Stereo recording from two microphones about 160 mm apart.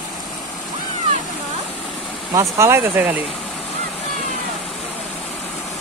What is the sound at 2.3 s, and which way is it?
Speech, 15° right (ahead or behind).